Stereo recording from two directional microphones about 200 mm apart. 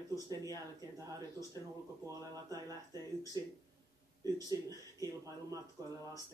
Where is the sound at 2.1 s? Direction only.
15° right (ahead or behind).